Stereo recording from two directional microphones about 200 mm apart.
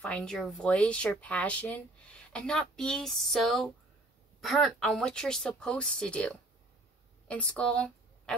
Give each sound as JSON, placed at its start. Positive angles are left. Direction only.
{"t": 0.0, "sound": "a woman's voice", "side_deg": 5}